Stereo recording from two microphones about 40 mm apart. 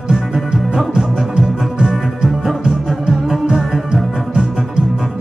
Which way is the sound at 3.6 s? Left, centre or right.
Centre.